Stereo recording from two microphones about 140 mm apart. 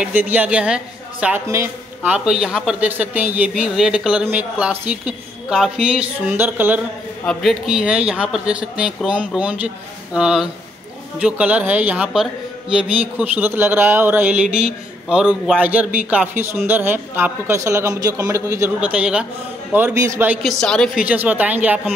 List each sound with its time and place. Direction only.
0.0 s a man's voice: 10° right (ahead or behind)
1.5 s a man's voice: 20° right (ahead or behind)
2.4 s a man's voice: 5° right (ahead or behind)
7.2 s a man's voice: centre (ahead or behind); by 18.7 s 20° right (ahead or behind)
18.8 s a man's voice: 10° right (ahead or behind)
20.4 s a woman's voice: 5° left (ahead or behind)
21.0 s a man's voice: 10° right (ahead or behind)